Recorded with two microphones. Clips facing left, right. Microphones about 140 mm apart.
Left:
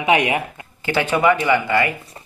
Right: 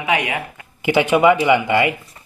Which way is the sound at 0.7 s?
15° right (ahead or behind).